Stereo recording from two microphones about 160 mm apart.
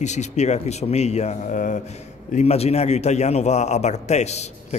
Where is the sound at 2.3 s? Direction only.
40° left (ahead or behind).